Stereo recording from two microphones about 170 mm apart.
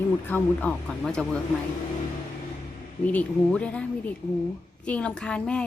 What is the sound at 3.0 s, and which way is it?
A woman's voice, 10° left (ahead or behind).